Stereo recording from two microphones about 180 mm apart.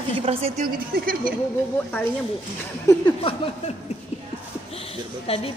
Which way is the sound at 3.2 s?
30° left (ahead or behind).